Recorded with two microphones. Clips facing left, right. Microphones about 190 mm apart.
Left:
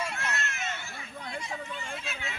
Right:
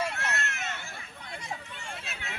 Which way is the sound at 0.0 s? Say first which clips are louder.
Right 2 dB; 65° right (ahead or behind).